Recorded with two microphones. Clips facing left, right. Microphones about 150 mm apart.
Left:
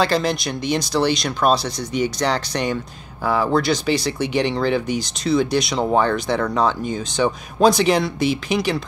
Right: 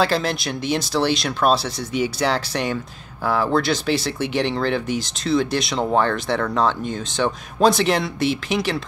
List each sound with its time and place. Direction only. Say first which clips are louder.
0.0 s speech: left 1 dB; 5° right (ahead or behind)